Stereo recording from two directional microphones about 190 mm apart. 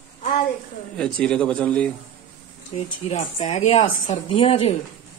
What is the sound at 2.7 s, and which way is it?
Speech, 35° left (ahead or behind).